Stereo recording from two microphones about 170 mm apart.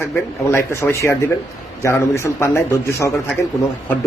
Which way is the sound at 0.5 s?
15° left (ahead or behind).